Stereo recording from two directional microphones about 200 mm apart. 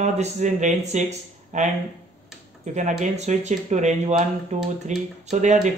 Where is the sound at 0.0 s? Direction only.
35° right (ahead or behind).